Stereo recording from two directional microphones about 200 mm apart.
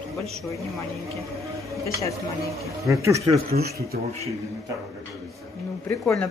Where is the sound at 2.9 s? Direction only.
15° right (ahead or behind).